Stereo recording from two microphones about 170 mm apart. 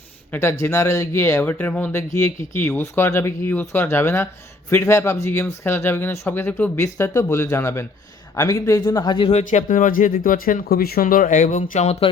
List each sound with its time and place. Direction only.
0.3 s speech: 15° left (ahead or behind)
9.3 s speech: 45° left (ahead or behind)